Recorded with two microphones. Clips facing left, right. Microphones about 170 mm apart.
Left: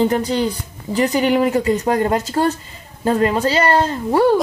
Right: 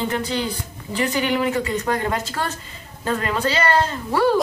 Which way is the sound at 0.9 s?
40° left (ahead or behind).